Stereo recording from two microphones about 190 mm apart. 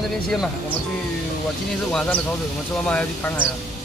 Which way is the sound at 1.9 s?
5° left (ahead or behind).